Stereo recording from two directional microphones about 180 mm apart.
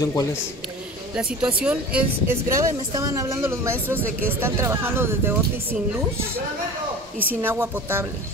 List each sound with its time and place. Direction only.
0.0 s speech: 15° left (ahead or behind)
1.6 s speech: 5° right (ahead or behind)
7.4 s speech: 10° right (ahead or behind)